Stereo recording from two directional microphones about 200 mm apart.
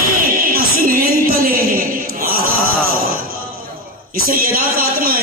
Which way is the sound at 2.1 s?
45° right (ahead or behind).